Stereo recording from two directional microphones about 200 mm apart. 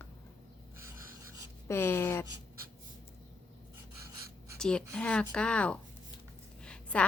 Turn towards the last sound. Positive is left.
turn(degrees=5)  # may be behind; listen again after turning